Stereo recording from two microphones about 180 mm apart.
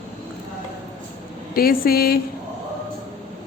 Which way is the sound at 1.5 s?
55° left (ahead or behind).